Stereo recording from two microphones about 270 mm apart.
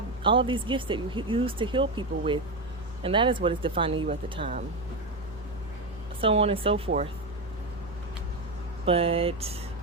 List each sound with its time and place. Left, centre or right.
0.2 s speech: centre
6.1 s speech: right
8.9 s speech: right